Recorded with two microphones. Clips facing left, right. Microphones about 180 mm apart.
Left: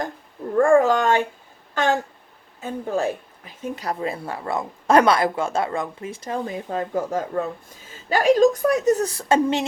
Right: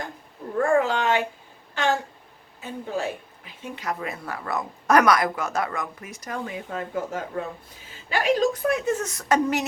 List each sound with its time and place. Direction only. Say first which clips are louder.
0.5 s a woman's voice: left 5 dB; 45° left (ahead or behind); by 9.6 s 25° left (ahead or behind)